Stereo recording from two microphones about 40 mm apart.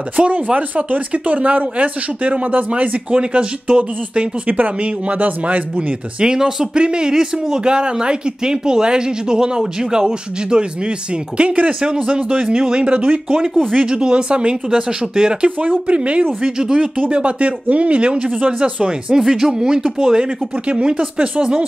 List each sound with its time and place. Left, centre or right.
0.1 s a man's voice: right
0.6 s speech: right
4.5 s speech: right
4.7 s speech: right
6.2 s a man's voice: centre; by 11.7 s right
11.8 s a man's voice: right
16.4 s a man's voice: centre
19.1 s a man's voice: centre